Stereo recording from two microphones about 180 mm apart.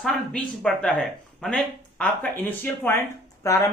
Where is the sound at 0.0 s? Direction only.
5° left (ahead or behind).